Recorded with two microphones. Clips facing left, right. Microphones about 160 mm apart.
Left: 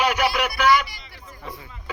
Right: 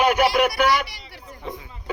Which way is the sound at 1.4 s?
20° right (ahead or behind).